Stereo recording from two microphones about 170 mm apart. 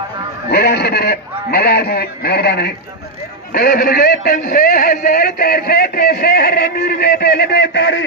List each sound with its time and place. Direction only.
0.5 s a man's voice: 70° left (ahead or behind); by 8.0 s 90° left